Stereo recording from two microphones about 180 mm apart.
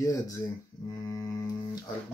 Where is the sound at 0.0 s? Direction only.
15° left (ahead or behind).